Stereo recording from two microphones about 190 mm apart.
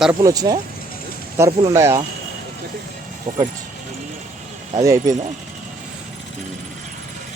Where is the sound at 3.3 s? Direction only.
40° right (ahead or behind).